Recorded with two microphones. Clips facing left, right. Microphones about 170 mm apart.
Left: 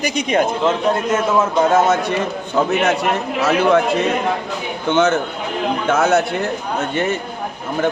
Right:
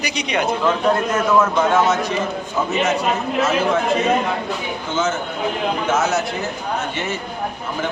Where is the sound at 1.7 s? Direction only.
45° left (ahead or behind).